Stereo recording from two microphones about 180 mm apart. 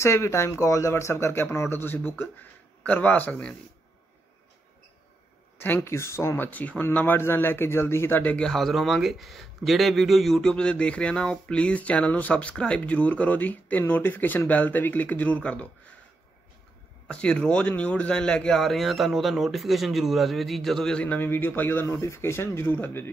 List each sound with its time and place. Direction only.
0.0 s speech: 15° left (ahead or behind)
5.6 s speech: 10° left (ahead or behind)
17.1 s a man's voice: 5° left (ahead or behind)